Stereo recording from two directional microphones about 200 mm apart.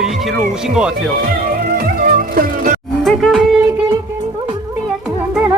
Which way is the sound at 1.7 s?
45° right (ahead or behind).